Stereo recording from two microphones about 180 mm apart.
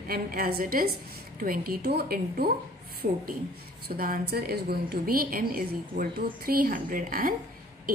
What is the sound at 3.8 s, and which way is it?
A woman's voice, 55° right (ahead or behind).